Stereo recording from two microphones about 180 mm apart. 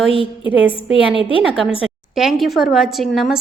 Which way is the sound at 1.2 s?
30° left (ahead or behind).